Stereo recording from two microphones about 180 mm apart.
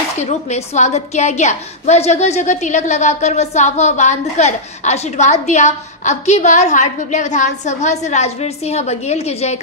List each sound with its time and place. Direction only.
0.2 s a woman's voice: 40° left (ahead or behind)